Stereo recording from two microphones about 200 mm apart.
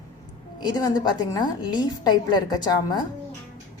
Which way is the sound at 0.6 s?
20° left (ahead or behind).